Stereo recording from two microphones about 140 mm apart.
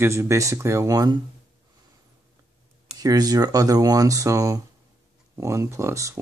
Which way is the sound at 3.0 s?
25° right (ahead or behind).